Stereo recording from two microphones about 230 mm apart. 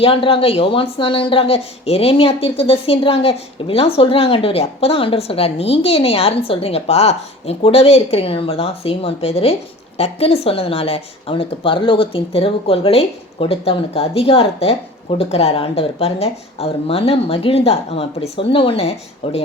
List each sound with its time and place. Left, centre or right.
0.0 s speech: left